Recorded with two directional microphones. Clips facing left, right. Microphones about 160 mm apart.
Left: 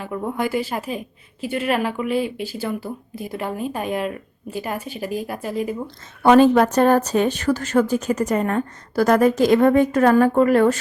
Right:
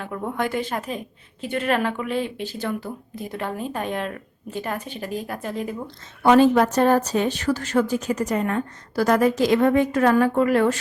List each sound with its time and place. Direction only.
0.0 s a woman's voice: 5° left (ahead or behind)
6.2 s a woman's voice: 55° left (ahead or behind)